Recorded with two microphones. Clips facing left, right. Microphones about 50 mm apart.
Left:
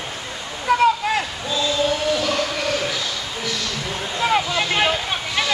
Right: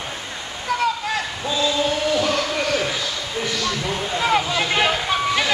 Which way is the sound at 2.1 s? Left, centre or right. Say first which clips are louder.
Right 1 dB; centre.